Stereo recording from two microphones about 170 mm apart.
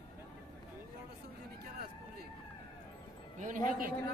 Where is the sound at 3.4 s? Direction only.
50° right (ahead or behind).